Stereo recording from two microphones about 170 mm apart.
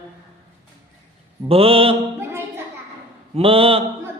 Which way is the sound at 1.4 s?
35° right (ahead or behind).